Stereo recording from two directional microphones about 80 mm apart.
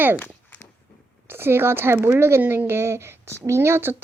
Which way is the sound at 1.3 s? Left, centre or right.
Right.